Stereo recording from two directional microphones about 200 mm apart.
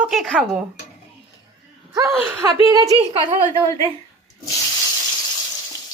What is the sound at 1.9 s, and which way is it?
A woman's voice, 15° right (ahead or behind).